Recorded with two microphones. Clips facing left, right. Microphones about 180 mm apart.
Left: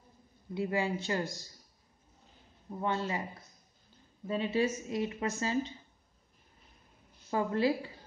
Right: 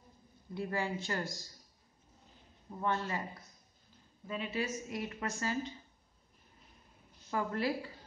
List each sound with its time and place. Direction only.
0.6 s a woman's voice: 20° left (ahead or behind)
2.8 s a woman's voice: 20° left (ahead or behind)
4.3 s a woman's voice: 30° left (ahead or behind)
7.2 s a woman's voice: 25° left (ahead or behind)